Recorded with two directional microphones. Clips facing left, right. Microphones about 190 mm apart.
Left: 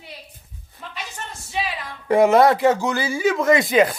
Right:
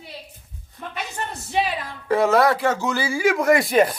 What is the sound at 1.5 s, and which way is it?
Speech, 50° right (ahead or behind).